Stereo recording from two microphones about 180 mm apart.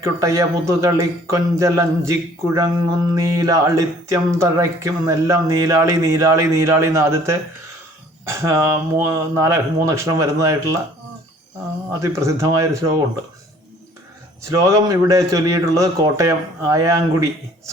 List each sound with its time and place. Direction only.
0.0 s a man's voice: 15° right (ahead or behind)
11.9 s a man's voice: 15° right (ahead or behind)
14.4 s a man's voice: 15° right (ahead or behind)